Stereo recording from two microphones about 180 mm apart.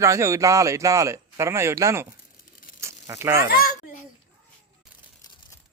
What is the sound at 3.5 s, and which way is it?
Speech, 55° left (ahead or behind).